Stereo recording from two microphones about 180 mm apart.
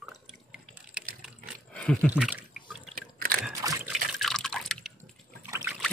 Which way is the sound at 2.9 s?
55° right (ahead or behind).